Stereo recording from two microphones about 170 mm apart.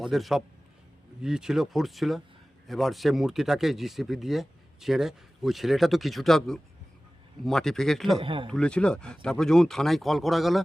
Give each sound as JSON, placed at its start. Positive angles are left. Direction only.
{"t": 0.0, "sound": "speech", "side_deg": 0}
{"t": 8.2, "sound": "speech", "side_deg": -30}
{"t": 8.4, "sound": "speech", "side_deg": 5}